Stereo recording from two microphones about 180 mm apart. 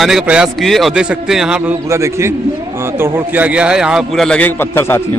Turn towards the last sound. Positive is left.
turn(degrees=15)  # may be behind; listen again after turning